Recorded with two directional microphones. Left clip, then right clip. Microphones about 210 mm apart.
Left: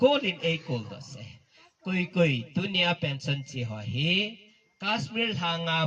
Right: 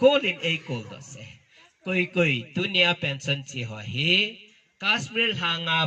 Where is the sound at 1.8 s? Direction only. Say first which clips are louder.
Right 3 dB; 55° left (ahead or behind).